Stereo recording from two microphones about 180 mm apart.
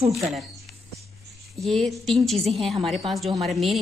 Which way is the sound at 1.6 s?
Centre (ahead or behind).